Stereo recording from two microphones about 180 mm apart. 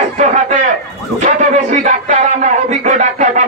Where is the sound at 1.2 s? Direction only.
45° right (ahead or behind).